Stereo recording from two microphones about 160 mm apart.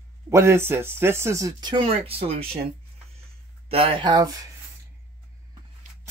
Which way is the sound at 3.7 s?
35° right (ahead or behind).